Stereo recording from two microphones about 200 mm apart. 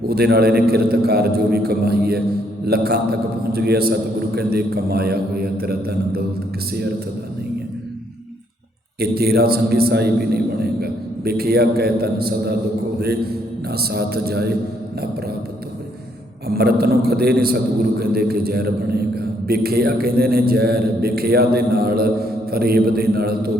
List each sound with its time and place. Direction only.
0.1 s a man's voice: 50° right (ahead or behind)
9.0 s a man's voice: 50° right (ahead or behind)
16.5 s a man's voice: 50° right (ahead or behind)